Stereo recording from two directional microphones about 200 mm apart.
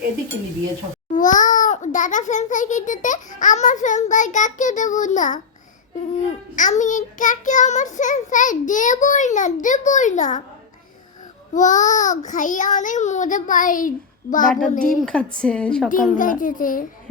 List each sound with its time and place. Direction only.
1.1 s a child's voice: 40° left (ahead or behind)
11.5 s a child's voice: 40° left (ahead or behind)
15.0 s a woman's voice: 5° left (ahead or behind)
16.1 s a child's voice: 40° left (ahead or behind)